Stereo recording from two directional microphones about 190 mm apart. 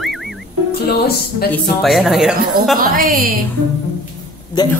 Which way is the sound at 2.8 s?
50° right (ahead or behind).